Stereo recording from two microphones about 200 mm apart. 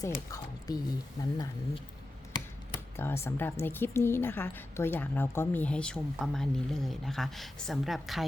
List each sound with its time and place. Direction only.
0.3 s a woman's voice: 15° left (ahead or behind)
2.9 s a woman's voice: 10° left (ahead or behind)